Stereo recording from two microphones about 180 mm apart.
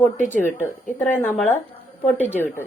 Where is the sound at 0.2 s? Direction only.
45° left (ahead or behind).